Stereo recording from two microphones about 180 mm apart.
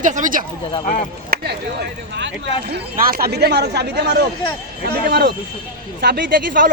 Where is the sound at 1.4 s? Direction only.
65° right (ahead or behind).